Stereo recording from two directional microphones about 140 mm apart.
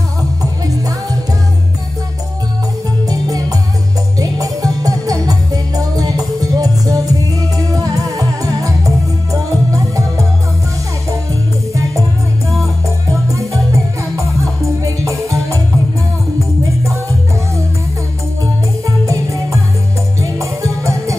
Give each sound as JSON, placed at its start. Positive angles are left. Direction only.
{"t": 0.4, "sound": "music", "side_deg": -25}
{"t": 3.1, "sound": "music", "side_deg": -25}
{"t": 11.7, "sound": "music", "side_deg": -20}
{"t": 13.1, "sound": "music", "side_deg": -20}
{"t": 16.6, "sound": "music", "side_deg": -20}
{"t": 18.9, "sound": "music", "side_deg": -20}